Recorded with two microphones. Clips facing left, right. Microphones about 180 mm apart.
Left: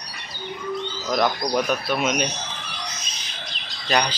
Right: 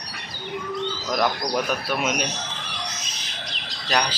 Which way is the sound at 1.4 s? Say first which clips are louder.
Left 2 dB; 5° right (ahead or behind).